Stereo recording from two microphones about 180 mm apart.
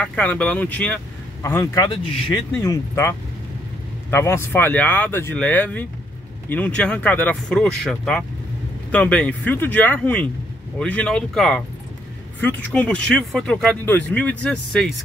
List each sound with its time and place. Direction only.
0.0 s speech: 5° left (ahead or behind)